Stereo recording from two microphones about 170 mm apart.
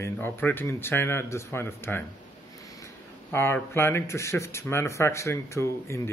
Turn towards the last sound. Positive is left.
turn(degrees=15)  # may be behind; listen again after turning